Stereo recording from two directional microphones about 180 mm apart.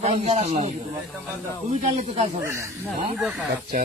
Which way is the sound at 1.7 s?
40° right (ahead or behind).